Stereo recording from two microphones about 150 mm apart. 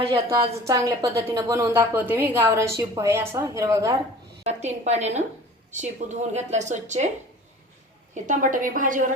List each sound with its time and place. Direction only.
0.7 s a woman's voice: 20° right (ahead or behind)
4.4 s a woman's voice: 45° right (ahead or behind)
8.1 s a woman's voice: 60° right (ahead or behind)